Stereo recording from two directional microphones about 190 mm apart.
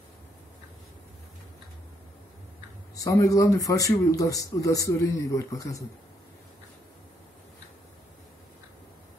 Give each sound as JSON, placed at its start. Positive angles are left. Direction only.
{"t": 3.0, "sound": "a man's voice", "side_deg": 15}